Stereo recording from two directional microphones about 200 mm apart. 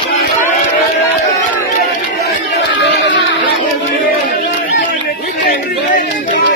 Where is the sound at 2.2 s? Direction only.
60° left (ahead or behind).